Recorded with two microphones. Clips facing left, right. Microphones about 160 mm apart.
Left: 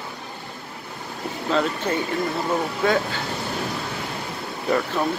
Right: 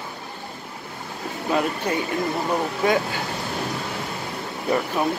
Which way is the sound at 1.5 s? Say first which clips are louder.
Even; 10° right (ahead or behind).